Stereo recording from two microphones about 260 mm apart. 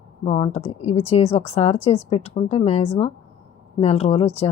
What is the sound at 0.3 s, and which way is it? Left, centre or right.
A woman's voice, left.